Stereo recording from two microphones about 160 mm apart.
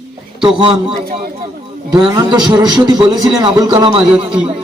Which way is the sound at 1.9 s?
25° right (ahead or behind).